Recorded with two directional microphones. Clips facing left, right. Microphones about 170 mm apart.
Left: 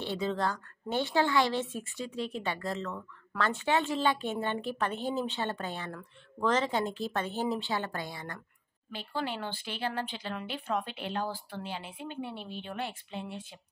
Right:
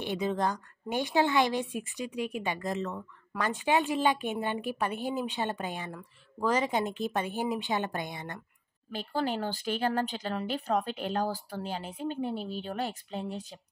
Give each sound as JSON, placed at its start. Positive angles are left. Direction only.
{"t": 0.0, "sound": "a woman's voice", "side_deg": -15}
{"t": 8.9, "sound": "speech", "side_deg": -45}